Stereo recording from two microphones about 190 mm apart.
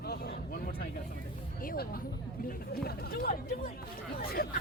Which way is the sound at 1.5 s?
50° left (ahead or behind).